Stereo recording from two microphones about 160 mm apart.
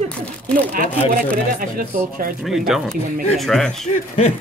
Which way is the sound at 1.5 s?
60° right (ahead or behind).